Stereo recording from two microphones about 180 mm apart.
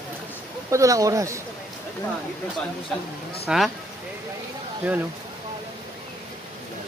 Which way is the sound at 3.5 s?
5° right (ahead or behind).